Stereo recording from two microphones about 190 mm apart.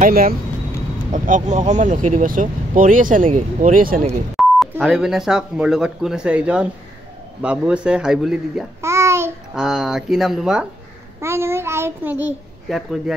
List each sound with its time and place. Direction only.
0.0 s speech: 50° right (ahead or behind)
4.4 s speech: centre (ahead or behind)
8.8 s babbling: 15° right (ahead or behind)
9.6 s a child's voice: centre (ahead or behind)